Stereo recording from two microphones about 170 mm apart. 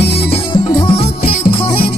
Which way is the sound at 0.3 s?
35° left (ahead or behind).